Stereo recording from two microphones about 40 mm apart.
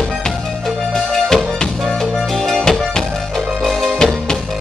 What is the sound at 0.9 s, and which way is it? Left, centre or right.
Music, centre.